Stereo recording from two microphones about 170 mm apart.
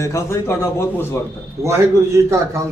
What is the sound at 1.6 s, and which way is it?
Speech, 15° right (ahead or behind).